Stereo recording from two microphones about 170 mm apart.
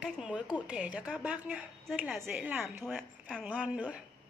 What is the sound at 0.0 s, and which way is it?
A woman's voice, 5° right (ahead or behind).